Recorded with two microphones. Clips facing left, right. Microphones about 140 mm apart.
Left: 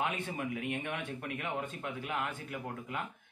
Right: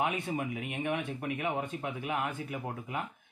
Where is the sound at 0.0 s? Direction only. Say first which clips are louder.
Right 3 dB; 20° right (ahead or behind).